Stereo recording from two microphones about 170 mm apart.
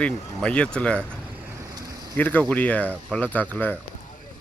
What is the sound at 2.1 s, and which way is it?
Speech, 10° left (ahead or behind).